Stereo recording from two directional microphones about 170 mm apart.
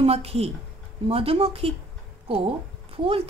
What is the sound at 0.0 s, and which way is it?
Speech, 35° right (ahead or behind).